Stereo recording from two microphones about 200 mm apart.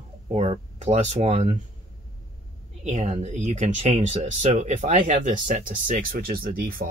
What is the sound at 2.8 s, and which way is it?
Speech, 35° right (ahead or behind).